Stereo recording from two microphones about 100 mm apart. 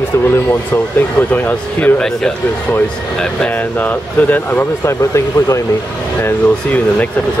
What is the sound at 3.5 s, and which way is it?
Speech, 15° left (ahead or behind).